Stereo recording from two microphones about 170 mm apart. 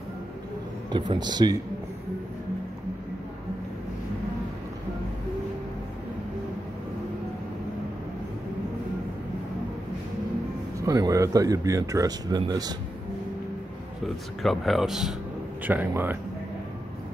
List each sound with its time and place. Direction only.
0.9 s speech: 30° right (ahead or behind)
10.8 s speech: 20° right (ahead or behind)
14.0 s speech: centre (ahead or behind)